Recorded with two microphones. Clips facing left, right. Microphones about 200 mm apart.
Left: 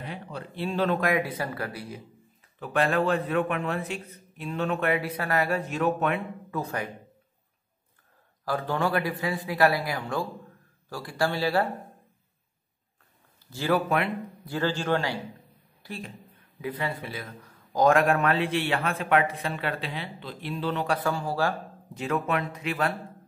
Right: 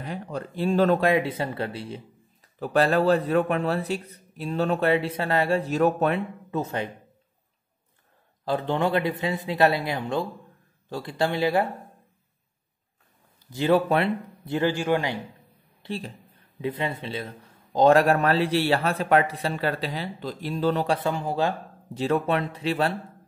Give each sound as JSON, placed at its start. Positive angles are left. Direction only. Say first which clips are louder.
{"t": 0.0, "sound": "speech", "louder": "right 5 dB", "side_deg": -45}
{"t": 1.0, "sound": "a man's voice", "louder": "right 4 dB", "side_deg": -25}
{"t": 2.6, "sound": "a man's voice", "louder": "right 4 dB", "side_deg": -35}
{"t": 6.5, "sound": "a man's voice", "louder": "right 3 dB", "side_deg": -25}
{"t": 8.5, "sound": "a man's voice", "louder": "right 3 dB", "side_deg": -20}
{"t": 13.5, "sound": "a man's voice", "louder": "right 4 dB", "side_deg": -20}
{"t": 15.8, "sound": "a man's voice", "louder": "right 5 dB", "side_deg": -30}
{"t": 20.9, "sound": "a man's voice", "louder": "right 2 dB", "side_deg": -20}
{"t": 21.9, "sound": "a man's voice", "louder": "right 4 dB", "side_deg": -30}